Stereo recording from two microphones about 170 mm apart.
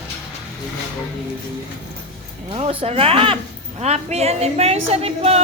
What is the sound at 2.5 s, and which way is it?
A woman's voice, 35° right (ahead or behind).